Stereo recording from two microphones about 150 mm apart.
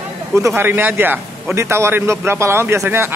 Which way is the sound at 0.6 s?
15° right (ahead or behind).